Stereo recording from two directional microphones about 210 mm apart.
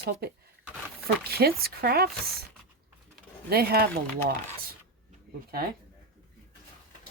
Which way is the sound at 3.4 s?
50° right (ahead or behind).